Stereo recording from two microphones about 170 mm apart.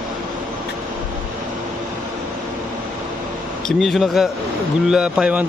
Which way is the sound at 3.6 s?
Centre (ahead or behind).